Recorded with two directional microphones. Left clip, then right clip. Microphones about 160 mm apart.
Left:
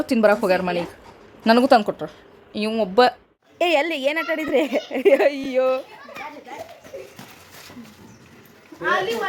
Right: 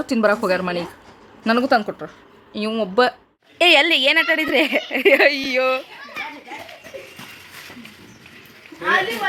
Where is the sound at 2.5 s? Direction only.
5° left (ahead or behind).